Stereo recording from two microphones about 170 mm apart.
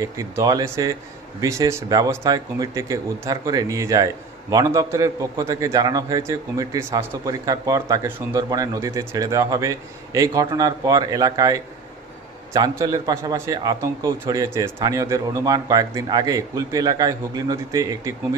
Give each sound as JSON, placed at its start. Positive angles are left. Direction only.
{"t": 0.0, "sound": "speech", "side_deg": -20}